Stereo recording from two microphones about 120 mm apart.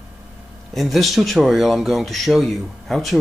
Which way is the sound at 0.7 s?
Centre (ahead or behind).